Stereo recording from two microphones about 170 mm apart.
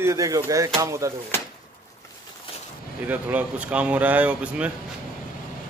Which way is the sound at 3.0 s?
10° right (ahead or behind).